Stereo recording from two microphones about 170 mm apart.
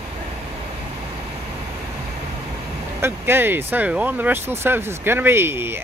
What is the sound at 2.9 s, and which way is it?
Speech, 15° right (ahead or behind).